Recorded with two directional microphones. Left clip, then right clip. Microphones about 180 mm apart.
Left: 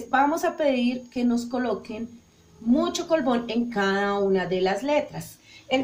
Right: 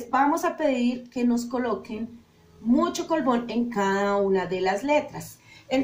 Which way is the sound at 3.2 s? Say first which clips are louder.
Even; 45° left (ahead or behind).